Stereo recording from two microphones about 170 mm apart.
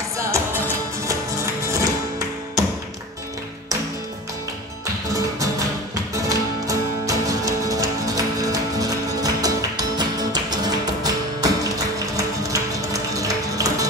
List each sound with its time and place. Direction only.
0.2 s music: 15° right (ahead or behind)
5.1 s music: 20° right (ahead or behind)